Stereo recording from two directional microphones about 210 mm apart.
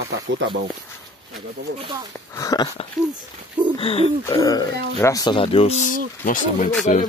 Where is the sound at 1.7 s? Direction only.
20° right (ahead or behind).